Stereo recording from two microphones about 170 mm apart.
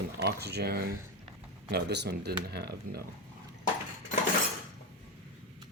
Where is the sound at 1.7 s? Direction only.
75° right (ahead or behind).